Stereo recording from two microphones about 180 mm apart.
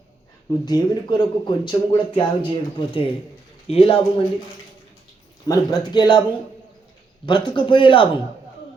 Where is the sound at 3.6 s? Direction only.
30° left (ahead or behind).